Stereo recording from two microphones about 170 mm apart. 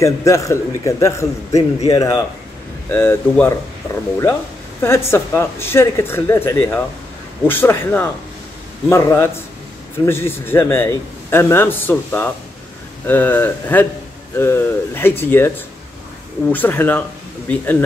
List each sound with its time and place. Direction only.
0.0 s a man's voice: 20° left (ahead or behind)
4.8 s a man's voice: 15° left (ahead or behind)
16.5 s a man's voice: 10° left (ahead or behind)